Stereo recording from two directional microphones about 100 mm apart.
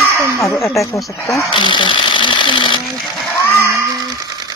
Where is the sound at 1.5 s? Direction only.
55° left (ahead or behind).